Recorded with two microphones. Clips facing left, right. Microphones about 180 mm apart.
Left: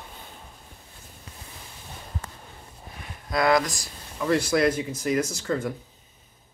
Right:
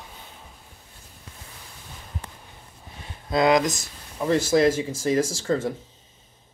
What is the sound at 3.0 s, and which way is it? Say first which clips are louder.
Speech: right 3 dB; 25° right (ahead or behind).